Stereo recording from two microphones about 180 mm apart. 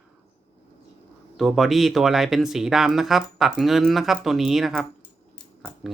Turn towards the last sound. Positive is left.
turn(degrees=0)  # may be behind; listen again after turning